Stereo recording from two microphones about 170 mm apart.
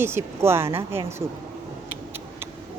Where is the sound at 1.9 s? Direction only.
15° right (ahead or behind).